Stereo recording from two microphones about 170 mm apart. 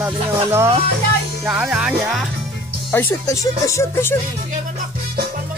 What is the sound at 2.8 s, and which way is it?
Speech, 10° left (ahead or behind).